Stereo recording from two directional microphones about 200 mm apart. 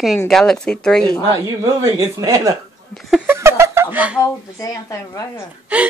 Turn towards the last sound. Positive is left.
turn(degrees=-10)  # may be behind; listen again after turning